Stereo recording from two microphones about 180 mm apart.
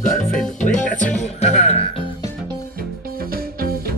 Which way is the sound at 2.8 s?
55° right (ahead or behind).